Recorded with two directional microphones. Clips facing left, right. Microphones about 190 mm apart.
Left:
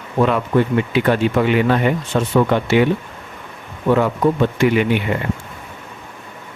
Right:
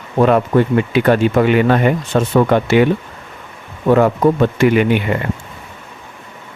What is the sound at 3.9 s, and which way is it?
Speech, 50° right (ahead or behind).